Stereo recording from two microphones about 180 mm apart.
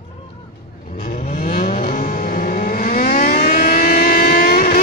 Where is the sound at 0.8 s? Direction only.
55° left (ahead or behind).